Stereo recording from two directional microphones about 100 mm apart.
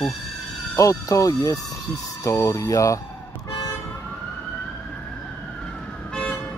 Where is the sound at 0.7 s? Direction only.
35° left (ahead or behind).